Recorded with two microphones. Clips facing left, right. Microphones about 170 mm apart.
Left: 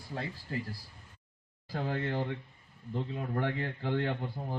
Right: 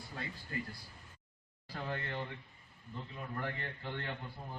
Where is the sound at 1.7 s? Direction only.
40° left (ahead or behind).